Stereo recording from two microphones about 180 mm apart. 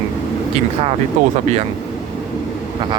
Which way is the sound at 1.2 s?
45° right (ahead or behind).